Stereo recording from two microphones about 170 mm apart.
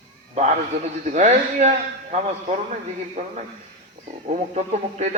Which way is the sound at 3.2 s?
45° right (ahead or behind).